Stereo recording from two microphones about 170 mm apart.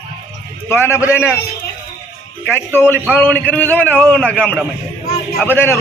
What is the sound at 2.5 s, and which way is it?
A man's voice, 15° left (ahead or behind).